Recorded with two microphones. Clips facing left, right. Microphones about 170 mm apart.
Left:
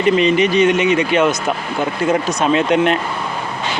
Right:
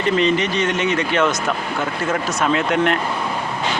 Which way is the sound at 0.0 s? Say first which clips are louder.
Left 4 dB; 15° left (ahead or behind).